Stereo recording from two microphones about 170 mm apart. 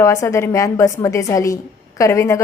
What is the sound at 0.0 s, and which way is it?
A woman's voice, 15° left (ahead or behind).